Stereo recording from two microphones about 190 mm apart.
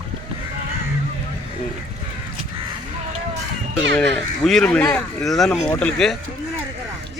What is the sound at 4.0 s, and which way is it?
Speech, centre (ahead or behind).